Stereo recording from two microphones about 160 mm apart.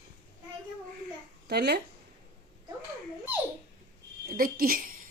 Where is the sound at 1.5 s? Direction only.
90° right.